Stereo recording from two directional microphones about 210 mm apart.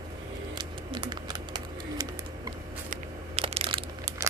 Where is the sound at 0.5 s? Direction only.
25° right (ahead or behind).